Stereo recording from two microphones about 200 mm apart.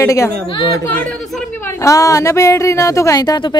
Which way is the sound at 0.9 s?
5° left (ahead or behind).